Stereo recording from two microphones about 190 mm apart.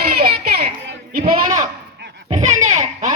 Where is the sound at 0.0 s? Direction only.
55° right (ahead or behind).